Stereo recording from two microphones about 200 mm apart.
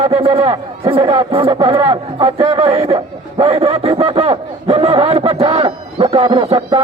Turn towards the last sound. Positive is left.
turn(degrees=-25)  # may be behind; listen again after turning